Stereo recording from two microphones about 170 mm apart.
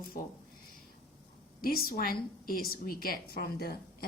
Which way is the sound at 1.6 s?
60° left (ahead or behind).